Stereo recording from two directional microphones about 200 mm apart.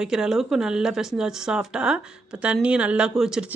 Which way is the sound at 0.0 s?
5° right (ahead or behind).